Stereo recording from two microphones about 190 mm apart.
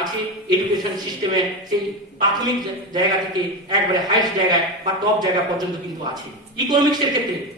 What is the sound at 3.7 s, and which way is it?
A woman's voice, 20° right (ahead or behind).